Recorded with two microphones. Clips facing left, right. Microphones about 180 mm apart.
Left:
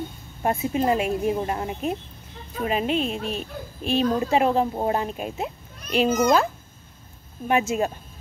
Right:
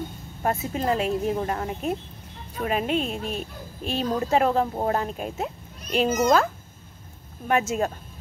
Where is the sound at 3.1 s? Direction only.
10° right (ahead or behind).